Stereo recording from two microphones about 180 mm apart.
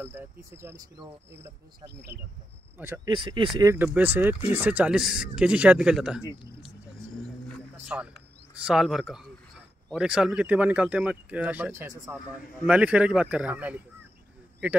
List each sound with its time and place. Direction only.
0.0 s speech: 10° right (ahead or behind)
3.1 s speech: 25° right (ahead or behind)
3.5 s speech: 15° right (ahead or behind)
7.9 s speech: 10° right (ahead or behind)